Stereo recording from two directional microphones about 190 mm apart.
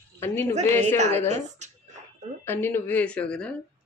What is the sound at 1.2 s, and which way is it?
Speech, 40° right (ahead or behind).